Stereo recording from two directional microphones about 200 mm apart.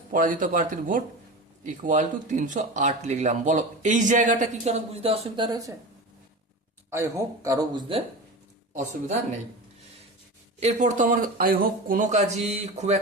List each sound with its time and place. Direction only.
0.1 s speech: 40° right (ahead or behind)
5.5 s speech: 15° right (ahead or behind)
6.9 s speech: 15° right (ahead or behind)
8.7 s speech: 35° right (ahead or behind)
10.6 s speech: 35° right (ahead or behind)